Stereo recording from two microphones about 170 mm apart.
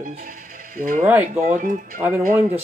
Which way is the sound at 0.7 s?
55° right (ahead or behind).